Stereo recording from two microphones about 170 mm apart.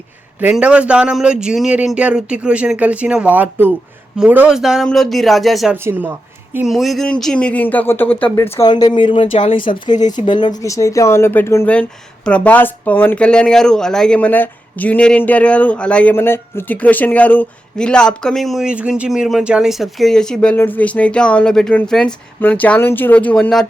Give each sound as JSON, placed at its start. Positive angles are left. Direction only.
{"t": 0.3, "sound": "speech", "side_deg": -10}
{"t": 5.7, "sound": "a woman's voice", "side_deg": -10}
{"t": 6.7, "sound": "speech", "side_deg": 0}
{"t": 8.5, "sound": "speech", "side_deg": 25}